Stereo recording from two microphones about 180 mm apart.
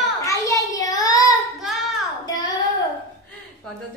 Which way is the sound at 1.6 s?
Centre (ahead or behind).